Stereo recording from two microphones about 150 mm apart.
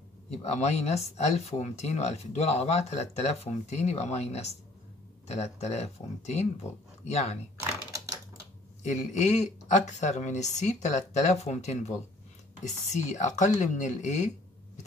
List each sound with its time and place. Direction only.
0.3 s speech: 45° left (ahead or behind)
8.8 s speech: 50° left (ahead or behind)